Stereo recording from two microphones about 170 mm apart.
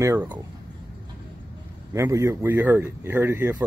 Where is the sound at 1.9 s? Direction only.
15° right (ahead or behind).